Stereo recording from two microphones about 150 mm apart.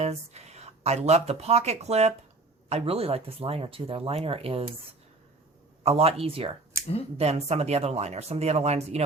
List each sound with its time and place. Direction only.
0.0 s speech: 45° right (ahead or behind)
5.8 s speech: 40° right (ahead or behind)